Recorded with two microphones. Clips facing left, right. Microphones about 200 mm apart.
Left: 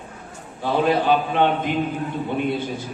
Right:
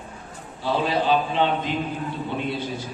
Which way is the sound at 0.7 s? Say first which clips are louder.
Left 3 dB; 55° left (ahead or behind).